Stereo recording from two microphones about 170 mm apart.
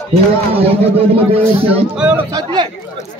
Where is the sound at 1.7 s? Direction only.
10° right (ahead or behind).